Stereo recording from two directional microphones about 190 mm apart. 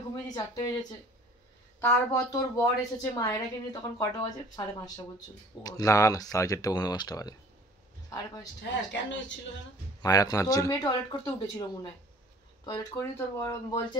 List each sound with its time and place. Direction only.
0.1 s speech: 20° left (ahead or behind)
8.6 s speech: 70° left (ahead or behind)
10.0 s speech: 20° left (ahead or behind)